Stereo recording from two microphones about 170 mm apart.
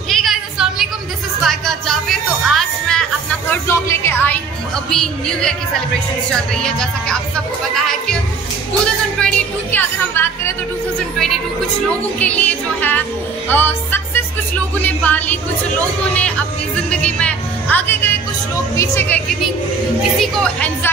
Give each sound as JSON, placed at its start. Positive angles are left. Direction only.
{"t": 0.1, "sound": "a sound", "side_deg": 0}
{"t": 1.4, "sound": "music", "side_deg": 0}
{"t": 6.5, "sound": "a woman's voice", "side_deg": 5}
{"t": 7.7, "sound": "music", "side_deg": 0}
{"t": 9.2, "sound": "music", "side_deg": 10}
{"t": 12.2, "sound": "music", "side_deg": 10}
{"t": 15.8, "sound": "speech", "side_deg": 5}
{"t": 16.9, "sound": "music", "side_deg": 5}
{"t": 18.8, "sound": "a woman's voice", "side_deg": 10}